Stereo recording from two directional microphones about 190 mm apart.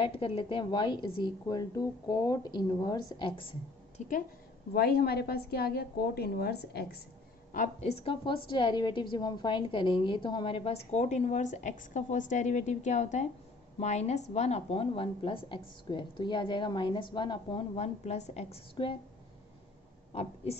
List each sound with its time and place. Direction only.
0.0 s a woman's voice: 30° left (ahead or behind)
4.0 s a woman's voice: 40° left (ahead or behind)
4.7 s a woman's voice: 55° left (ahead or behind)
7.5 s a woman's voice: 40° left (ahead or behind)
20.1 s speech: 30° left (ahead or behind)